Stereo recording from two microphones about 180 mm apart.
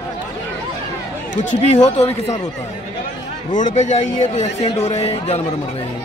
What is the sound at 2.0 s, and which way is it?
Speech, 35° left (ahead or behind).